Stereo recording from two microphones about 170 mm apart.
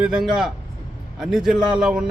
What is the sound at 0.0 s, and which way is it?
A man's voice, 5° right (ahead or behind).